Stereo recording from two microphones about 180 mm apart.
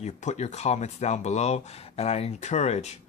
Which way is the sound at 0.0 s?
40° left (ahead or behind).